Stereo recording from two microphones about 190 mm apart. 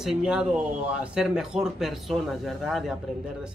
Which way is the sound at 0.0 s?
5° right (ahead or behind).